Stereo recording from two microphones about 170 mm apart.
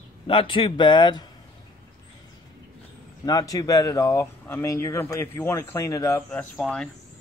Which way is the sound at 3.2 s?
20° left (ahead or behind).